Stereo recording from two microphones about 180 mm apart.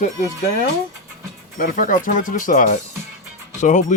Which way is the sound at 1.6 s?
45° left (ahead or behind).